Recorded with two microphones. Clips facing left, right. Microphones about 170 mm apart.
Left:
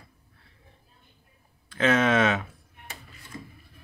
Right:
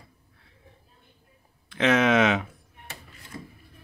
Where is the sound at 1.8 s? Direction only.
10° right (ahead or behind).